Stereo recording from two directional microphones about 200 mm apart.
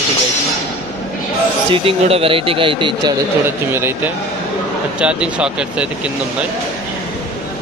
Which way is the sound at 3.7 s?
10° right (ahead or behind).